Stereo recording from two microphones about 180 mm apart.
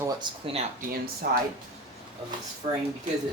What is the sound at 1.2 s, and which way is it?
Speech, 60° right (ahead or behind).